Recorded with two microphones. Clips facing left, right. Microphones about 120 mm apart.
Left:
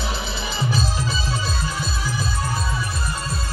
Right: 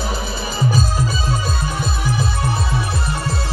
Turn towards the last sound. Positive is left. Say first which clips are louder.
# right 5 dB
turn(degrees=-70)  # may be behind; listen again after turning